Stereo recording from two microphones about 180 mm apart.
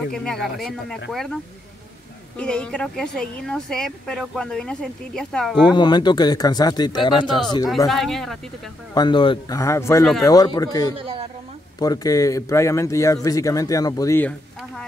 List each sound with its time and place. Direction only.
0.1 s speech: 5° left (ahead or behind)
2.3 s speech: 5° left (ahead or behind)
5.7 s speech: 25° left (ahead or behind)
7.9 s speech: centre (ahead or behind)
8.9 s speech: 25° left (ahead or behind)